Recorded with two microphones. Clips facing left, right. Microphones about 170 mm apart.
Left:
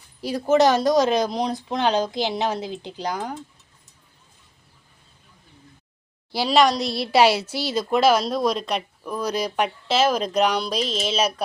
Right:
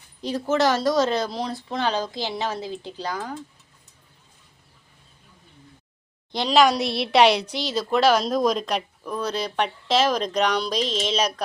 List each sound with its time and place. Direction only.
0.2 s speech: 10° left (ahead or behind)
6.3 s a woman's voice: 5° left (ahead or behind)